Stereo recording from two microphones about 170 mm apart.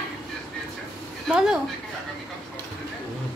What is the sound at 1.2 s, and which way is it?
Speech, 5° right (ahead or behind).